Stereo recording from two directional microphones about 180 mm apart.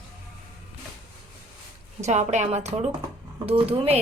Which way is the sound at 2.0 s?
40° right (ahead or behind).